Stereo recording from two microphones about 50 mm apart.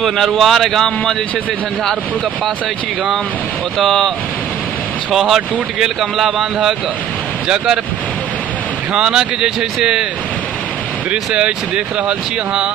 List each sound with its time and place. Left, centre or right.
0.0 s speech: centre
5.1 s speech: centre
7.4 s speech: centre
8.9 s speech: centre
11.1 s speech: right